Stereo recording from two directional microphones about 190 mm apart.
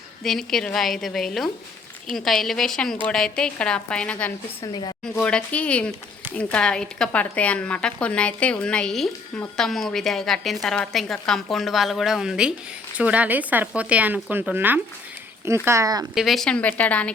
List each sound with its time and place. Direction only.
0.2 s a woman's voice: centre (ahead or behind)
4.6 s a woman's voice: 20° left (ahead or behind)
5.2 s a woman's voice: 5° left (ahead or behind); by 16.0 s 20° right (ahead or behind)
16.1 s a woman's voice: centre (ahead or behind)